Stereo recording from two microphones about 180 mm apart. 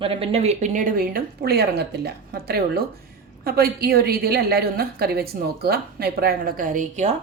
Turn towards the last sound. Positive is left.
turn(degrees=-45)  # may be behind; listen again after turning